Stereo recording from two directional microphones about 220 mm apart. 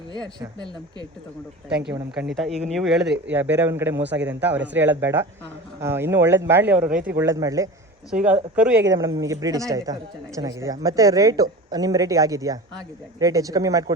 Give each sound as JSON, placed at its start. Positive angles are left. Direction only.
{"t": 1.8, "sound": "a woman's voice", "side_deg": -5}